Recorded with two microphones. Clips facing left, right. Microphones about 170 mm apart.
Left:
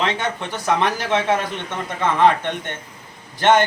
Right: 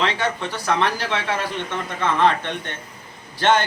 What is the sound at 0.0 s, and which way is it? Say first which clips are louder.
A man's voice: even; 20° left (ahead or behind).